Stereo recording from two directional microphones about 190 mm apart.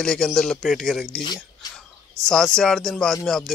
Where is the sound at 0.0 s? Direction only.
5° left (ahead or behind).